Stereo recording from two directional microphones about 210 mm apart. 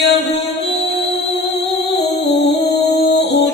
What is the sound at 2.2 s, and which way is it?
Music, 55° left (ahead or behind).